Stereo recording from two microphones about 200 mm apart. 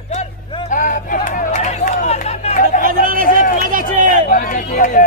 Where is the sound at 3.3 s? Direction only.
40° left (ahead or behind).